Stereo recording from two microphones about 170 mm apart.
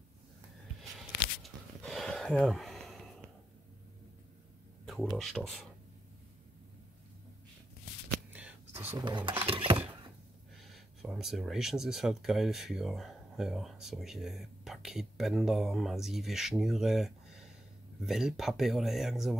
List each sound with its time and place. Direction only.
0.9 s a sound: centre (ahead or behind)
4.8 s speech: centre (ahead or behind)
8.3 s whispering: 10° right (ahead or behind)
9.0 s speech: 25° right (ahead or behind)
9.4 s a sound: 30° right (ahead or behind)
10.6 s speech: centre (ahead or behind)